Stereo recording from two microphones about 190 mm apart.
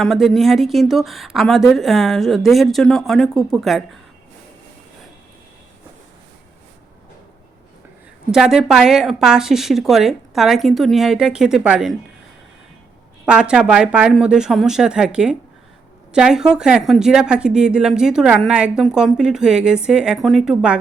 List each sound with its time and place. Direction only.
0.0 s speech: centre (ahead or behind)
8.3 s speech: centre (ahead or behind)
13.2 s speech: 5° right (ahead or behind)